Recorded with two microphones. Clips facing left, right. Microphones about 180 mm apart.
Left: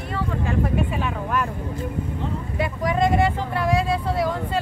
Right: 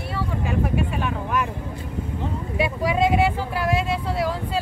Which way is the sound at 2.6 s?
10° right (ahead or behind).